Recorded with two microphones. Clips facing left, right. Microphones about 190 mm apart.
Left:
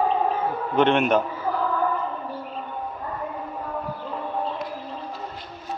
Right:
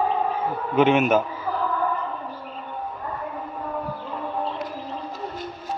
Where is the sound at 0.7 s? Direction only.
5° right (ahead or behind).